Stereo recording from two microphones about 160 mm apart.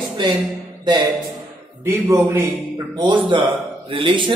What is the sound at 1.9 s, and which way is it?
Speech, 15° right (ahead or behind).